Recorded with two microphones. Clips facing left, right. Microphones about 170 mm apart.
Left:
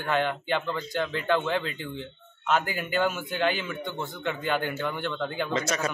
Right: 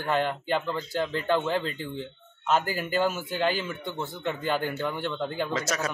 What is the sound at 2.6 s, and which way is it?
Speech, 35° right (ahead or behind).